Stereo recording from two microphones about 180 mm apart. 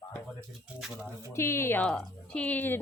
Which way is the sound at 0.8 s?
Centre (ahead or behind).